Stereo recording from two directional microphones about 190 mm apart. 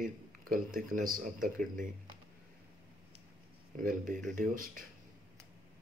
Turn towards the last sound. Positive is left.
turn(degrees=-45)  # may be behind; listen again after turning